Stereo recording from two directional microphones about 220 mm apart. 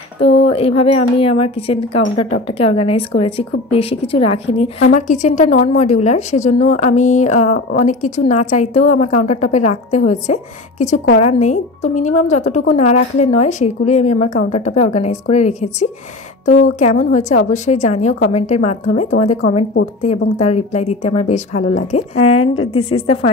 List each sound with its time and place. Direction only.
0.2 s a woman's voice: 25° left (ahead or behind)
17.1 s a woman's voice: 30° left (ahead or behind)